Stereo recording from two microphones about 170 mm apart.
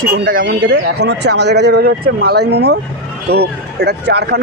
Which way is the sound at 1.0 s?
80° right.